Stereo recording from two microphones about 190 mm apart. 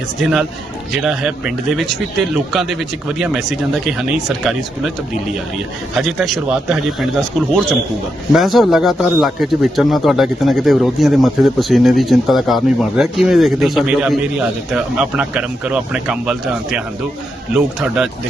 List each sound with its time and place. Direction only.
0.2 s speech: 5° right (ahead or behind)
6.0 s speech: centre (ahead or behind)